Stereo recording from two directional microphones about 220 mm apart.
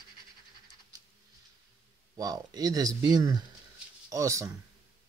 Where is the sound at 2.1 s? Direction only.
15° right (ahead or behind).